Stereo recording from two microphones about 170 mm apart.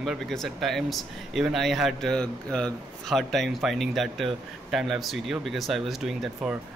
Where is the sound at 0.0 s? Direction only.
Centre (ahead or behind).